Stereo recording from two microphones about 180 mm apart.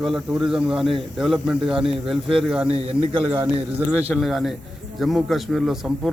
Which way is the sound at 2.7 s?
35° right (ahead or behind).